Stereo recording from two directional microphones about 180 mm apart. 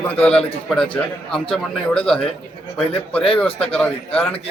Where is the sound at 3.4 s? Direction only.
5° left (ahead or behind).